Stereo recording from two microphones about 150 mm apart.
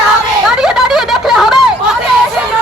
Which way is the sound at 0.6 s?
5° right (ahead or behind).